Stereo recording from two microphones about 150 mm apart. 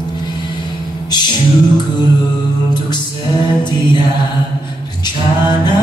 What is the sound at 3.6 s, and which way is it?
Mantra, 30° left (ahead or behind).